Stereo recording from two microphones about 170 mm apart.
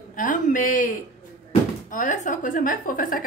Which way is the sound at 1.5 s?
50° left (ahead or behind).